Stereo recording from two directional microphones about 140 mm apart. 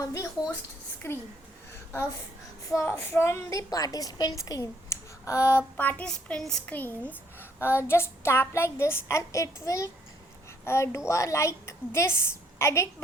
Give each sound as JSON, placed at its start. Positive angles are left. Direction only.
{"t": 0.0, "sound": "a woman's voice", "side_deg": 25}
{"t": 2.6, "sound": "a woman's voice", "side_deg": 20}